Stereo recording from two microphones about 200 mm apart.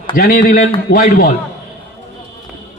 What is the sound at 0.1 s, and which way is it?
A man's voice, 45° left (ahead or behind).